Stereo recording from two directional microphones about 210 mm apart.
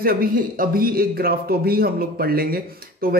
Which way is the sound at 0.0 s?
45° right (ahead or behind).